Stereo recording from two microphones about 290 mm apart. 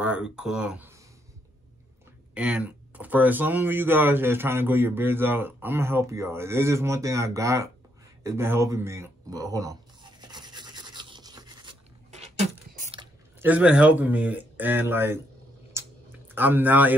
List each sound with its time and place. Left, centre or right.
0.0 s speech: centre
2.3 s speech: centre
8.2 s a sound: centre
13.4 s speech: centre
15.8 s clicking: centre
16.3 s speech: centre